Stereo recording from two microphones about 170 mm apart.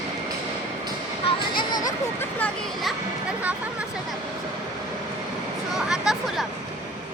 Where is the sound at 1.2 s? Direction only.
25° left (ahead or behind).